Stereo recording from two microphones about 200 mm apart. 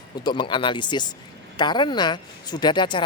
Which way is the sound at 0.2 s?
20° left (ahead or behind).